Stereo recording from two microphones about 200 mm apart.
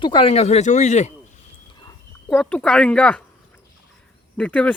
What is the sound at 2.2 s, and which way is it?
Speech, 5° left (ahead or behind).